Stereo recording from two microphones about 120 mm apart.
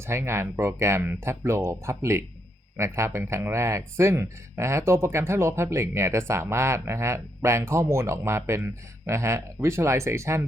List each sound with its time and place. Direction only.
0.0 s speech: 20° right (ahead or behind)